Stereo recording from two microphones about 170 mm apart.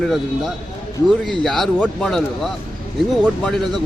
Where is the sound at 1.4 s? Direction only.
Centre (ahead or behind).